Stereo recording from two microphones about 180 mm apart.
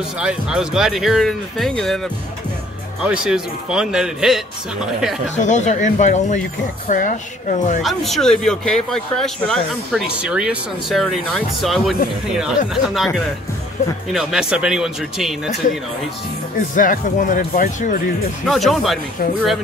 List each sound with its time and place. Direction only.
0.2 s speech: 5° right (ahead or behind)
3.0 s speech: 5° right (ahead or behind)
5.3 s speech: 40° left (ahead or behind)
7.8 s speech: centre (ahead or behind)
16.5 s speech: 50° left (ahead or behind)
18.4 s speech: centre (ahead or behind)